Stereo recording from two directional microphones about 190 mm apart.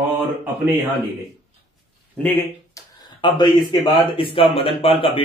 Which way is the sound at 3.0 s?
20° left (ahead or behind).